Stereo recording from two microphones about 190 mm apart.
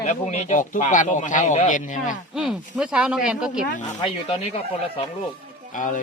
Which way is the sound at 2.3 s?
5° right (ahead or behind).